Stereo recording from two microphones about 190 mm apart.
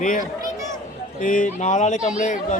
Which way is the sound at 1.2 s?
45° left (ahead or behind).